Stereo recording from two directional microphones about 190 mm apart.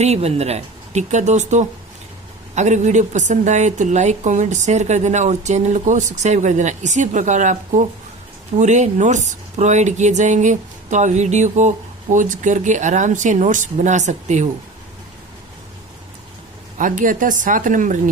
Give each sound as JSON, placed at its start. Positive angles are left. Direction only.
{"t": 0.0, "sound": "a woman's voice", "side_deg": -35}
{"t": 16.7, "sound": "a woman's voice", "side_deg": -45}